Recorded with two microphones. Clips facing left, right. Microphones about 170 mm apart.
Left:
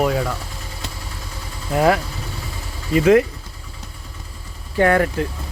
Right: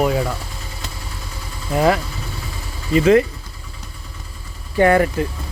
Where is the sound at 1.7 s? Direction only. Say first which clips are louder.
Even; centre (ahead or behind).